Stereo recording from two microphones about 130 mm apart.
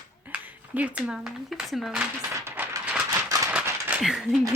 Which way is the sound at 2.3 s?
20° right (ahead or behind).